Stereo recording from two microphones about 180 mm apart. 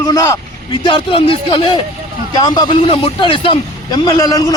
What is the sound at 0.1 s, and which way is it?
A man's voice, 20° left (ahead or behind).